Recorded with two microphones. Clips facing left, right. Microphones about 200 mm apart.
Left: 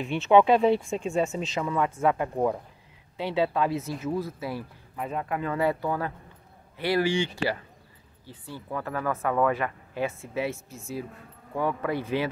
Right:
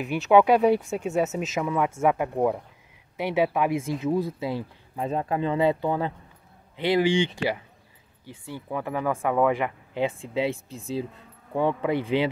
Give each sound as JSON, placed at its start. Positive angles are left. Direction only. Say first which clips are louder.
{"t": 0.0, "sound": "speech", "louder": "right 1 dB", "side_deg": 0}